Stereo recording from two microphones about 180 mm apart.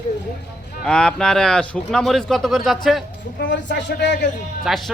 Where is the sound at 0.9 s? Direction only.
5° left (ahead or behind).